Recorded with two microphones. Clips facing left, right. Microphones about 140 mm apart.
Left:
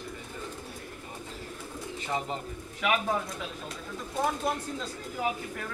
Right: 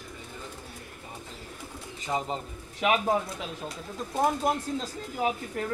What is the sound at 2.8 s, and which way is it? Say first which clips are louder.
Speech: right 3 dB; 25° right (ahead or behind).